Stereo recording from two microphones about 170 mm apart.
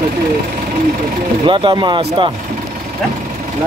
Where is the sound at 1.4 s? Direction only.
30° right (ahead or behind).